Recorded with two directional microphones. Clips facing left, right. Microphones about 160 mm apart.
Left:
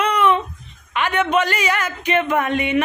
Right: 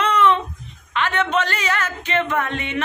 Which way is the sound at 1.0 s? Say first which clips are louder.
Left 2 dB; 10° left (ahead or behind).